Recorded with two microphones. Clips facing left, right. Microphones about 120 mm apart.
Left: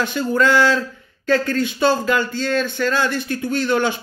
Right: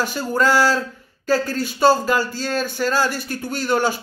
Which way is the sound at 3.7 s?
40° right (ahead or behind).